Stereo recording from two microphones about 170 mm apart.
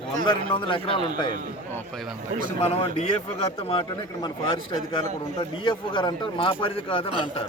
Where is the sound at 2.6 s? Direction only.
35° left (ahead or behind).